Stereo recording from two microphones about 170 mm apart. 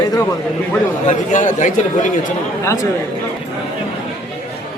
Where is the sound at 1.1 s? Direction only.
45° left (ahead or behind).